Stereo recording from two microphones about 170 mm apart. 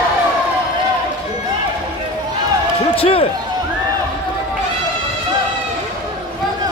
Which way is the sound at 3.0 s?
35° left (ahead or behind).